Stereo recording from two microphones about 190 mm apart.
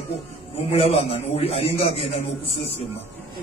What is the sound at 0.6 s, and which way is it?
A man's voice, 30° left (ahead or behind).